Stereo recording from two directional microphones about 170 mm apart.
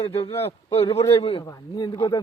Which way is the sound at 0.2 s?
35° left (ahead or behind).